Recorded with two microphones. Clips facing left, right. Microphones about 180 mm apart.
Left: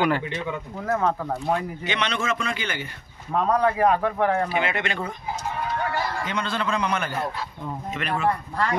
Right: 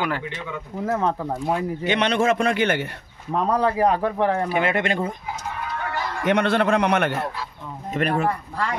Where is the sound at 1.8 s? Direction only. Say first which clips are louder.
Right 10 dB; 55° right (ahead or behind).